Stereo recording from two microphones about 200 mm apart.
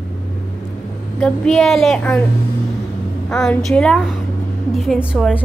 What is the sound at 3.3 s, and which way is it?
Speech, centre (ahead or behind).